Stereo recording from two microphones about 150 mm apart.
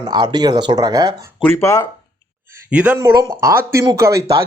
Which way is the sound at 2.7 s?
10° right (ahead or behind).